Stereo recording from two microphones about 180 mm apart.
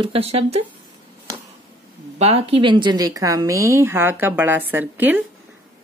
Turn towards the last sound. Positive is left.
turn(degrees=-10)  # may be behind; listen again after turning